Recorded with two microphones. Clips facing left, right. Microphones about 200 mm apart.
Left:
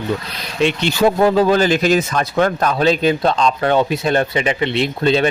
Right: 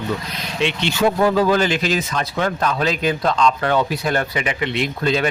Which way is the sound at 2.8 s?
30° left (ahead or behind).